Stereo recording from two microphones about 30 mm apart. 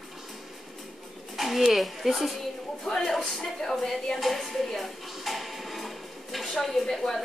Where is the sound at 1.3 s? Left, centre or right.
Centre.